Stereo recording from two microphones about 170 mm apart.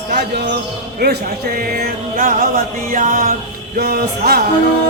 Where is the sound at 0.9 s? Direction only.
65° right (ahead or behind).